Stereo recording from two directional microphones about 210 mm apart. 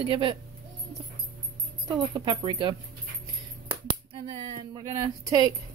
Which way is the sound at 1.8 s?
20° right (ahead or behind).